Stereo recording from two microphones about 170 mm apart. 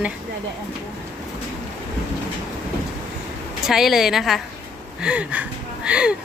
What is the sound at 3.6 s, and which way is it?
Speech, centre (ahead or behind).